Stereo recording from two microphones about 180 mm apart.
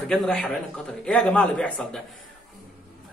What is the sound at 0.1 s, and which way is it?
Speech, 5° left (ahead or behind).